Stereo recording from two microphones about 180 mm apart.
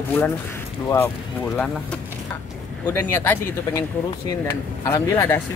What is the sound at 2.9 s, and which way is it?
Speech, 10° left (ahead or behind).